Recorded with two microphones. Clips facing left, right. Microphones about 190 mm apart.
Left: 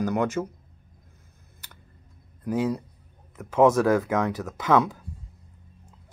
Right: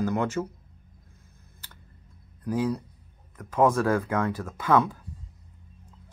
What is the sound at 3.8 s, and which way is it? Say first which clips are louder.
Speech: left 3 dB; 10° left (ahead or behind).